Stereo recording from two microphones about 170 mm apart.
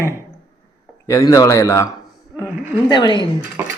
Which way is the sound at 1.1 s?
20° left (ahead or behind).